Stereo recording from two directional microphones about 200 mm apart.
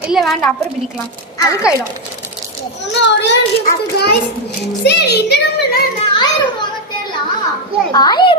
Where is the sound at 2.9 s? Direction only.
60° left (ahead or behind).